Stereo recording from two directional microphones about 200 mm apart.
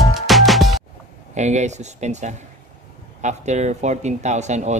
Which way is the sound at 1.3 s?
35° right (ahead or behind).